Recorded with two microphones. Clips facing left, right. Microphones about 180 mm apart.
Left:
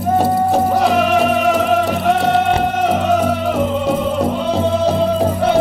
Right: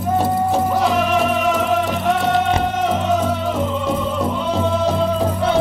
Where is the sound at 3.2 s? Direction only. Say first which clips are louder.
Left 3 dB; 15° left (ahead or behind).